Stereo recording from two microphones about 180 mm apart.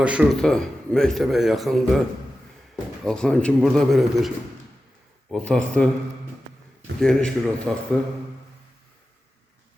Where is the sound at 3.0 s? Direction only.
5° left (ahead or behind).